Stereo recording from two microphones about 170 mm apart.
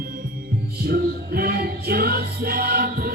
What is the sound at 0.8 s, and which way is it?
Music, 60° right (ahead or behind).